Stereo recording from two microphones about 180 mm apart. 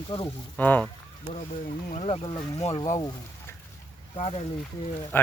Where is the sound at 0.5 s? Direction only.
10° left (ahead or behind).